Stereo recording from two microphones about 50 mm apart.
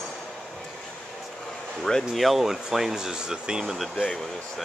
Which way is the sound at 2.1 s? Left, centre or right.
Centre.